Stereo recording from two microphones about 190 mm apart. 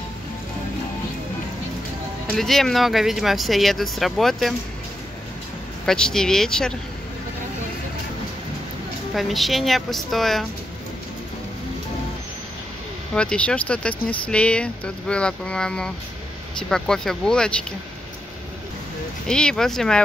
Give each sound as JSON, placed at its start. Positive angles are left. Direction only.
{"t": 2.2, "sound": "speech", "side_deg": 0}
{"t": 5.9, "sound": "speech", "side_deg": 5}
{"t": 9.1, "sound": "speech", "side_deg": 0}
{"t": 13.1, "sound": "speech", "side_deg": 5}
{"t": 19.2, "sound": "speech", "side_deg": 5}